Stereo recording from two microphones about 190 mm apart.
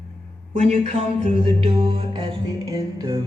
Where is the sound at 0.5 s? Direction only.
35° right (ahead or behind).